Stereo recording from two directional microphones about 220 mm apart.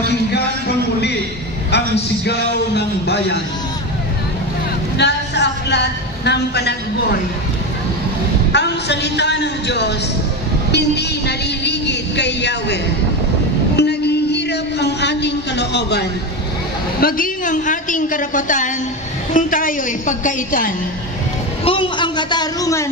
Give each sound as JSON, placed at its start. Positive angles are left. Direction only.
{"t": 2.2, "sound": "speech", "side_deg": 50}
{"t": 4.9, "sound": "speech", "side_deg": 50}
{"t": 8.5, "sound": "speech", "side_deg": 50}
{"t": 13.7, "sound": "a man's voice", "side_deg": 50}
{"t": 17.0, "sound": "a woman's voice", "side_deg": 35}
{"t": 21.6, "sound": "a man's voice", "side_deg": 25}